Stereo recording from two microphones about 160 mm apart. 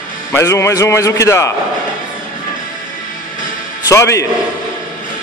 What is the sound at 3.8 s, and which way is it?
Speech, 20° left (ahead or behind).